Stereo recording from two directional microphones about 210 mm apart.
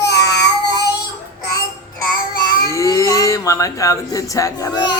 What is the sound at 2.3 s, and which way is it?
Child singing, 45° left (ahead or behind).